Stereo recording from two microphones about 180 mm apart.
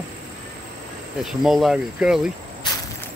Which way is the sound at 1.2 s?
Centre (ahead or behind).